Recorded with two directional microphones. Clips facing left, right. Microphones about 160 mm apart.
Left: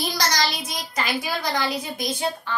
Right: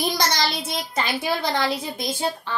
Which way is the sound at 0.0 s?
25° right (ahead or behind).